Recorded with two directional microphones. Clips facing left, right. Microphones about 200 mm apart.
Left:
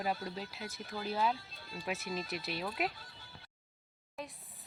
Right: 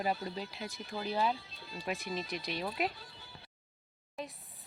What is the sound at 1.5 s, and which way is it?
Speech, 50° left (ahead or behind).